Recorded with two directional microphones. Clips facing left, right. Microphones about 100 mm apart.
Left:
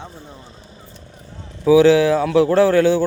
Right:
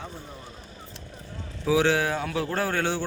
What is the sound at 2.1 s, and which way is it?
Speech, 90° left.